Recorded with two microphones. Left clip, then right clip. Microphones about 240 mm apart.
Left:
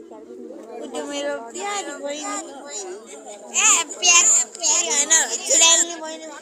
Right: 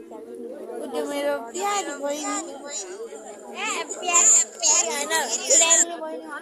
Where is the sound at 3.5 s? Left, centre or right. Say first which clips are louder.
Left 9 dB; left.